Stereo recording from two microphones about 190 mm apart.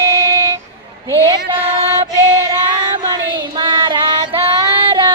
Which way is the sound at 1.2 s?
20° right (ahead or behind).